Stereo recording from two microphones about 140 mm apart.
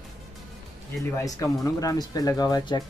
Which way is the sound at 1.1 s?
25° left (ahead or behind).